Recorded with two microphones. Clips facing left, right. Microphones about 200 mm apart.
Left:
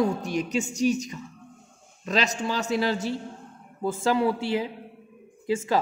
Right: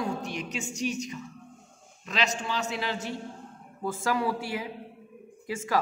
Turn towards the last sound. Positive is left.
turn(degrees=25)  # may be behind; listen again after turning